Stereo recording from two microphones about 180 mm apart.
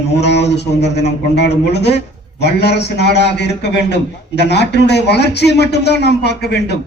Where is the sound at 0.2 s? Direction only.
70° left (ahead or behind).